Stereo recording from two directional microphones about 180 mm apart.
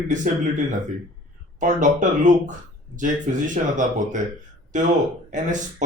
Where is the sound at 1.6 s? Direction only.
45° right (ahead or behind).